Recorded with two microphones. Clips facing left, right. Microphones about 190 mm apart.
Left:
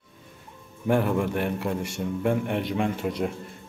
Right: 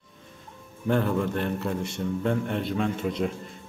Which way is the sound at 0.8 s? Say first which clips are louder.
Left 1 dB; 10° left (ahead or behind).